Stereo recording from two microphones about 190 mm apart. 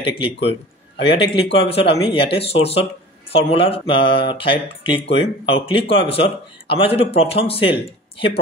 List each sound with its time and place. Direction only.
0.2 s a man's voice: 30° left (ahead or behind)